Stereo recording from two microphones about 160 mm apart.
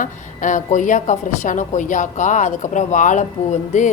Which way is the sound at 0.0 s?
55° left (ahead or behind).